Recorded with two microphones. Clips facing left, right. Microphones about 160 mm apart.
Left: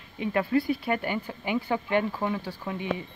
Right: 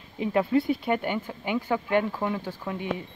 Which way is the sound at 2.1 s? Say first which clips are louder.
Even; centre (ahead or behind).